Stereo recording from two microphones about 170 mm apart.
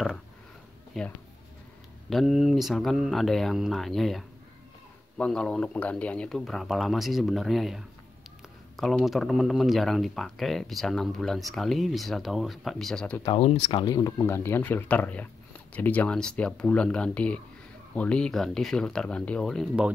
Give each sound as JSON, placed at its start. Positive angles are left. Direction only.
{"t": 1.0, "sound": "speech", "side_deg": 0}
{"t": 13.3, "sound": "speech", "side_deg": 35}